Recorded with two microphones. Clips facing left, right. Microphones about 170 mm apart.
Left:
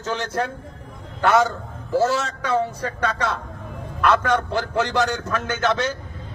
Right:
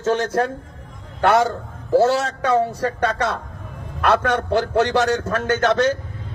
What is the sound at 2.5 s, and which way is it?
Speech, 70° right (ahead or behind).